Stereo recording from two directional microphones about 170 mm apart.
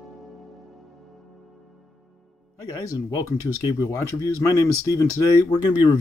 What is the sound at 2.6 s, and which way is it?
Speech, 20° left (ahead or behind).